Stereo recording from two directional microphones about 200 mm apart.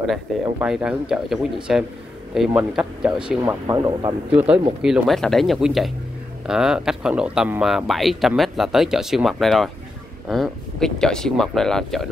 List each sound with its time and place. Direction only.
0.0 s speech: centre (ahead or behind)
3.6 s speech: 20° right (ahead or behind)
4.8 s speech: centre (ahead or behind)